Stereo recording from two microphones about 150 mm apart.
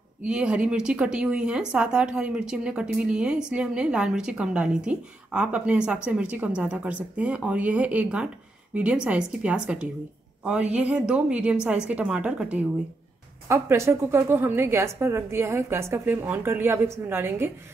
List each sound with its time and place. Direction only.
0.2 s speech: 5° right (ahead or behind)
13.5 s speech: 20° right (ahead or behind)